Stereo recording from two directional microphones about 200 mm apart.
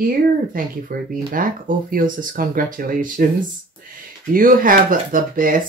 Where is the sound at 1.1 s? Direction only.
45° right (ahead or behind).